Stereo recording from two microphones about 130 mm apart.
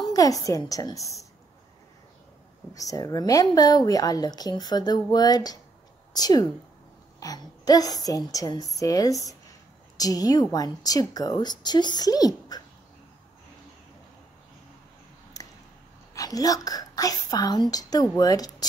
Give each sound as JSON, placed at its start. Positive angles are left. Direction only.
{"t": 0.0, "sound": "a woman's voice", "side_deg": 30}
{"t": 2.7, "sound": "speech", "side_deg": 25}
{"t": 15.3, "sound": "a sound", "side_deg": 25}
{"t": 16.2, "sound": "speech", "side_deg": 30}